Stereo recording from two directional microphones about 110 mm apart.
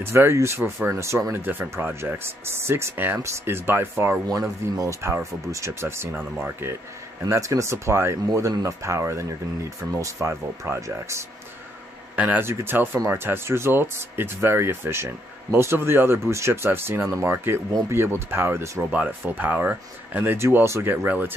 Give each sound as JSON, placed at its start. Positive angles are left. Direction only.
{"t": 0.0, "sound": "speech", "side_deg": -20}
{"t": 4.3, "sound": "speech", "side_deg": -30}